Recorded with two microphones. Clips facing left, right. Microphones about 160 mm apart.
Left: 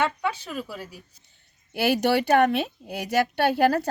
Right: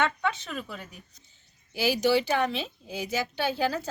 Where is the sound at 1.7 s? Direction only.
60° left (ahead or behind).